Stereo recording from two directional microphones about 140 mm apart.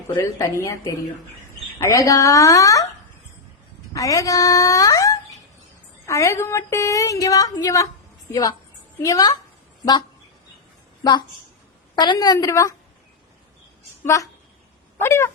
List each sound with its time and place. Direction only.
0.2 s a woman's voice: 20° left (ahead or behind)
3.9 s a woman's voice: 25° left (ahead or behind)
11.9 s a woman's voice: 30° left (ahead or behind)
14.0 s speech: 25° left (ahead or behind)
15.0 s a sound: 20° left (ahead or behind)